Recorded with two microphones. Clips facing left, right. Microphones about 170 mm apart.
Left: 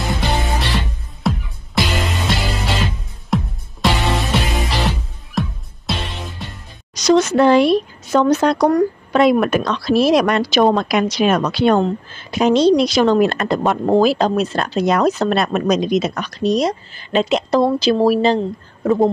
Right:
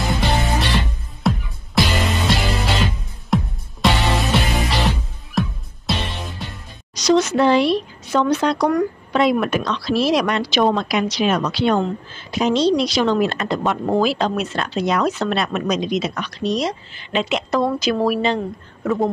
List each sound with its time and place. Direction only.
0.0 s music: centre (ahead or behind)
7.0 s speech: 50° left (ahead or behind)